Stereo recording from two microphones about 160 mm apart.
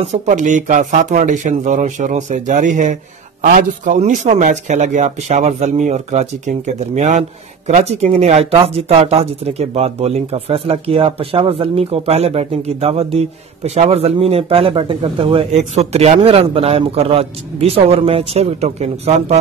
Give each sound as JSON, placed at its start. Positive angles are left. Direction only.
{"t": 0.0, "sound": "speech", "side_deg": -45}